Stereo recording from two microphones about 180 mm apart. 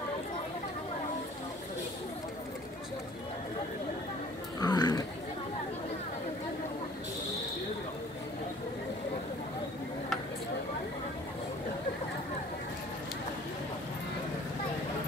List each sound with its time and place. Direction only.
4.6 s roaring cats: 20° left (ahead or behind)